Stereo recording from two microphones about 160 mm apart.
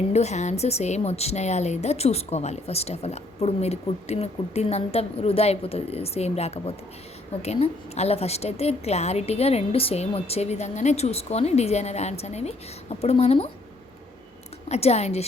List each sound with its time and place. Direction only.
0.1 s a woman's voice: 45° left (ahead or behind)
14.7 s a woman's voice: 40° left (ahead or behind)